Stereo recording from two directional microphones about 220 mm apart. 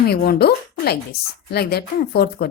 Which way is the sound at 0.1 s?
45° left (ahead or behind).